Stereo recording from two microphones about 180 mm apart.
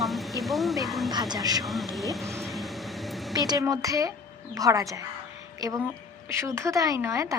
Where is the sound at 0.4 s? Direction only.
Centre (ahead or behind).